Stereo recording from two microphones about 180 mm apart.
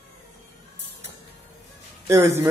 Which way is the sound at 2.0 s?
15° right (ahead or behind).